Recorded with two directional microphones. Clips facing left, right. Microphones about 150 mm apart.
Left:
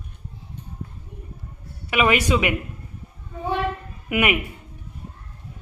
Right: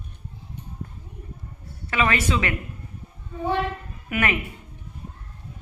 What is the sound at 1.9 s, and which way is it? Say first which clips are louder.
Speech: left 4 dB; 15° left (ahead or behind).